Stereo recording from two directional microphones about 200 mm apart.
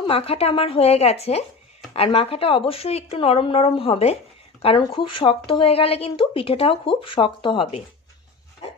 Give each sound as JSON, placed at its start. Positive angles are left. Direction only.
{"t": 0.0, "sound": "a woman's voice", "side_deg": 30}